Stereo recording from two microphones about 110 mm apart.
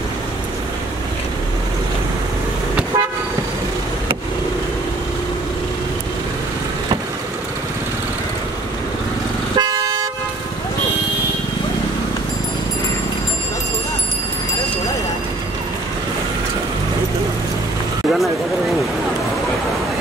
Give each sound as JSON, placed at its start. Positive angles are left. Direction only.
{"t": 9.6, "sound": "toot", "side_deg": -35}